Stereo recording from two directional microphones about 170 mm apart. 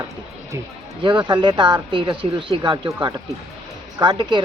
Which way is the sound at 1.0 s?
25° right (ahead or behind).